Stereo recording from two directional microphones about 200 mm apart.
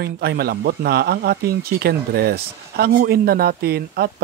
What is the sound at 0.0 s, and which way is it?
Speech, 55° right (ahead or behind).